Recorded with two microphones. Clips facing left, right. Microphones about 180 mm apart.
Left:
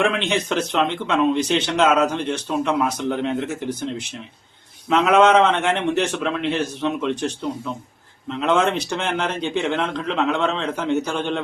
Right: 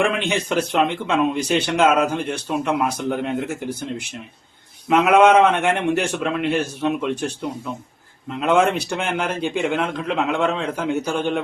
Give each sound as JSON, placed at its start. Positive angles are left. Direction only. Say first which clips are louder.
{"t": 0.3, "sound": "a man's voice", "louder": "right 1 dB", "side_deg": -10}